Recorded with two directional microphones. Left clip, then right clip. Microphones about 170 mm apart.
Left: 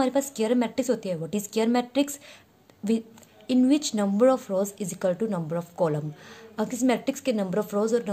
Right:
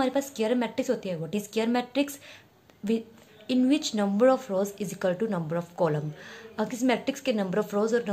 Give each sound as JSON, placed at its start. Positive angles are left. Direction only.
{"t": 0.0, "sound": "a woman's voice", "side_deg": 30}